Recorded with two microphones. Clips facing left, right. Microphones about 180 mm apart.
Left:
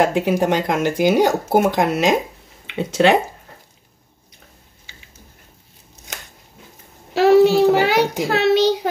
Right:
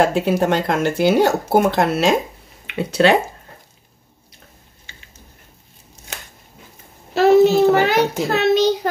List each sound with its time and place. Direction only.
0.0 s speech: 15° left (ahead or behind)
7.2 s speech: 10° left (ahead or behind)